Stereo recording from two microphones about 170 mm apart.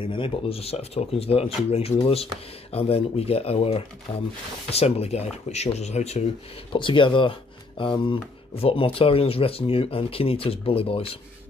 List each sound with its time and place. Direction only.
0.0 s speech: 30° left (ahead or behind)
6.7 s speech: 30° left (ahead or behind)